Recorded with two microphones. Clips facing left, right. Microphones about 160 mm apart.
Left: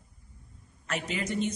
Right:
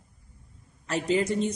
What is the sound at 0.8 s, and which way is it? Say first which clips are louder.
Speech: right 8 dB; 30° right (ahead or behind).